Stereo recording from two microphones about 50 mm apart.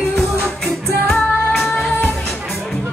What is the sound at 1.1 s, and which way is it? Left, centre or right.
Music, centre.